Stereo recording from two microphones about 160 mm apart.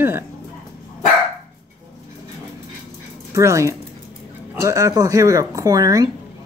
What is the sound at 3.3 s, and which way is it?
Speech, 20° right (ahead or behind).